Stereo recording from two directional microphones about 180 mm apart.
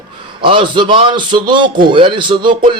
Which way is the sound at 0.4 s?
30° right (ahead or behind).